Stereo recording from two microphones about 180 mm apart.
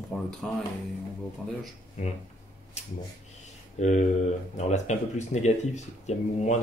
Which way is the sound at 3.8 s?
40° left (ahead or behind).